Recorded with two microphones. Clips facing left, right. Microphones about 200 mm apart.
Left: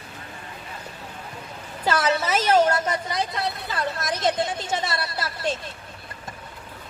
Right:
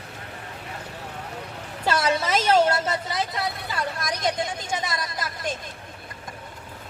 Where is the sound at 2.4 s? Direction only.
10° left (ahead or behind).